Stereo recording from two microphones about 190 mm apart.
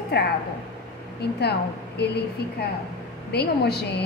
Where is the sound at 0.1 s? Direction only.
60° left (ahead or behind).